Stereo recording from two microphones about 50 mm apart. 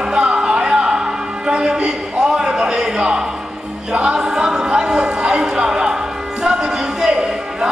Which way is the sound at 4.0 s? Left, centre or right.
Centre.